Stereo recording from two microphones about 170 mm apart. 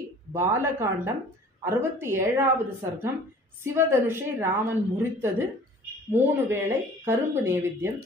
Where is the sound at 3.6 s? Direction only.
15° right (ahead or behind).